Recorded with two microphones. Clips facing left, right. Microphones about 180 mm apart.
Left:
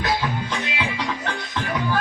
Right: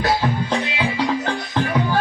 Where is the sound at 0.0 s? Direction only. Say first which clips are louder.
Right 4 dB; 35° right (ahead or behind).